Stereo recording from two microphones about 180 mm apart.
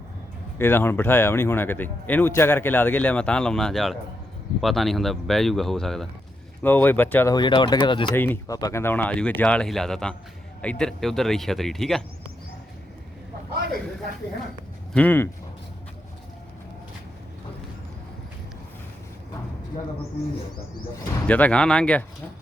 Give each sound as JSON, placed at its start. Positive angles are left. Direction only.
{"t": 0.6, "sound": "speech", "side_deg": 10}
{"t": 7.3, "sound": "speech", "side_deg": 25}
{"t": 8.1, "sound": "speech", "side_deg": 10}
{"t": 14.9, "sound": "speech", "side_deg": 10}
{"t": 21.2, "sound": "speech", "side_deg": 10}